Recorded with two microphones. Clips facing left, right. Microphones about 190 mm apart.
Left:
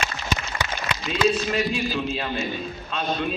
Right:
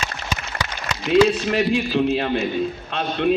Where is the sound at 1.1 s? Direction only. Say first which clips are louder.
Right 6 dB; 60° right (ahead or behind).